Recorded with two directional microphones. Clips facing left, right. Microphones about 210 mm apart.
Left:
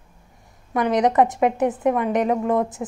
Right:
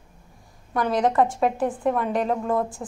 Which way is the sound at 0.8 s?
20° left (ahead or behind).